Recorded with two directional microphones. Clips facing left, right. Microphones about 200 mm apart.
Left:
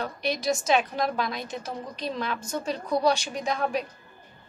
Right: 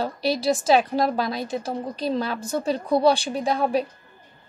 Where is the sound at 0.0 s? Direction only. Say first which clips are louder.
Right 5 dB; 30° right (ahead or behind).